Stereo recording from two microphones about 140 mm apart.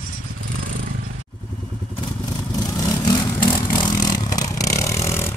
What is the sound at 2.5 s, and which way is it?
Vehicle, 25° left (ahead or behind).